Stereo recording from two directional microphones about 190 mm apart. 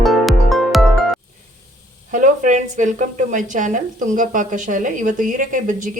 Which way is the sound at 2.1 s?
40° right (ahead or behind).